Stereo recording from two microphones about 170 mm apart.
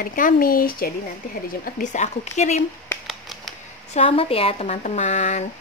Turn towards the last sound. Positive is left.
turn(degrees=40)  # may be behind; listen again after turning